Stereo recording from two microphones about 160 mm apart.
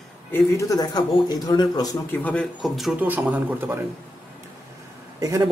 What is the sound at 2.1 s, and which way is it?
A man's voice, 10° left (ahead or behind).